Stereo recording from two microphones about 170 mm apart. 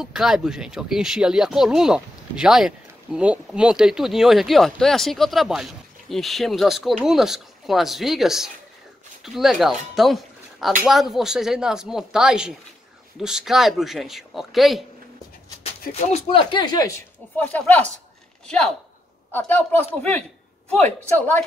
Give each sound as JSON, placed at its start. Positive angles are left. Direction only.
{"t": 0.0, "sound": "speech", "side_deg": -5}
{"t": 15.9, "sound": "speech", "side_deg": 35}
{"t": 17.4, "sound": "speech", "side_deg": 10}
{"t": 19.3, "sound": "speech", "side_deg": 10}